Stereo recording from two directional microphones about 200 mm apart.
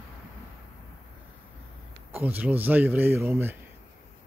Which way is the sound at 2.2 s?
10° right (ahead or behind).